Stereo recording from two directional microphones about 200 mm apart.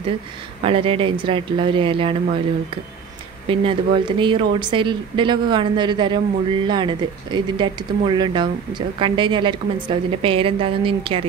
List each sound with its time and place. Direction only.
0.7 s a woman's voice: 25° right (ahead or behind)
3.4 s a woman's voice: 25° right (ahead or behind)